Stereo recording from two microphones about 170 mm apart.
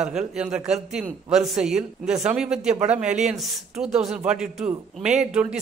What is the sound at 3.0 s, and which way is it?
Speech, 45° right (ahead or behind).